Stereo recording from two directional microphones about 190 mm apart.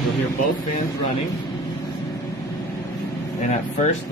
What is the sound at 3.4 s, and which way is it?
Speech, 40° left (ahead or behind).